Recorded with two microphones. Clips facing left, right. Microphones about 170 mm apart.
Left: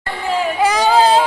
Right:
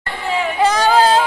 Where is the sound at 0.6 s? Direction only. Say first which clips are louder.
Even; 10° left (ahead or behind).